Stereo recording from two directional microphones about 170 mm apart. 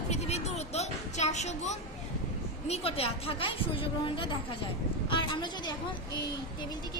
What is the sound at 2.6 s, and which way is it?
A woman's voice, 35° left (ahead or behind).